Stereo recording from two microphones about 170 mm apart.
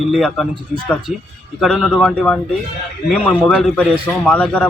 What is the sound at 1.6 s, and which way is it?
A man's voice, 5° left (ahead or behind).